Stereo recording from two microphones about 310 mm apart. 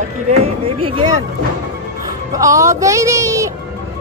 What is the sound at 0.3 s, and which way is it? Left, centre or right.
Speech, centre.